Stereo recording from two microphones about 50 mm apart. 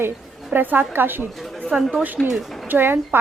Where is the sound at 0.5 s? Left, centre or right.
Right.